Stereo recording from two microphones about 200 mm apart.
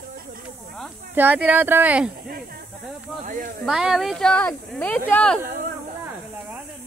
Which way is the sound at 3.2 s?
40° right (ahead or behind).